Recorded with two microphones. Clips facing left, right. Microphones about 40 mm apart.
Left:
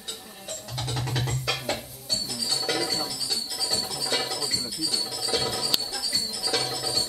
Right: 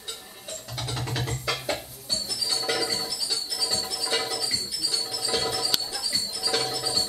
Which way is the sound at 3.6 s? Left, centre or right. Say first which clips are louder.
Even; centre.